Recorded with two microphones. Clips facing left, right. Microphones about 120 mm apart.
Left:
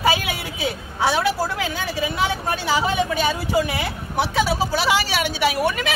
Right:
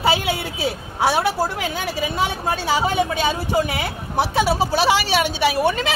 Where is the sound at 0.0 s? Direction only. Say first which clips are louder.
Right 1 dB; 25° right (ahead or behind).